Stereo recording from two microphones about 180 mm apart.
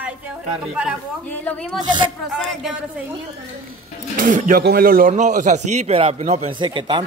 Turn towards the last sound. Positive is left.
turn(degrees=-25)  # may be behind; listen again after turning